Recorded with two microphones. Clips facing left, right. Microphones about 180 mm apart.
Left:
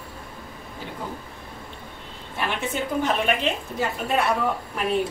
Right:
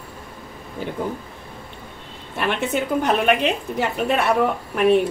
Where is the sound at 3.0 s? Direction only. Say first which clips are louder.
Right 5 dB; 65° right (ahead or behind).